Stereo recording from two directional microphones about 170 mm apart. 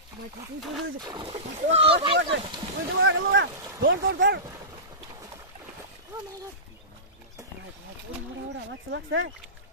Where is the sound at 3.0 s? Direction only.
90° right.